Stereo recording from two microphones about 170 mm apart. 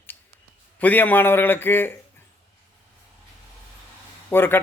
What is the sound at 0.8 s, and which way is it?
Speech, 10° left (ahead or behind).